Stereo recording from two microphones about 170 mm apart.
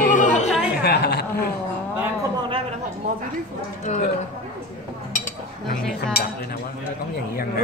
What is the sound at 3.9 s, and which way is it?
Speech, 45° left (ahead or behind).